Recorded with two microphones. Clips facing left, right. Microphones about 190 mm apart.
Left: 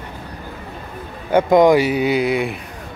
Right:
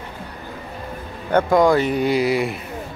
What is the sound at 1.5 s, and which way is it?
Mantra, 20° left (ahead or behind).